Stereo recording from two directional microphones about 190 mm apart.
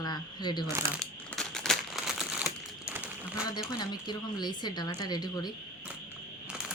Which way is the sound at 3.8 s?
20° left (ahead or behind).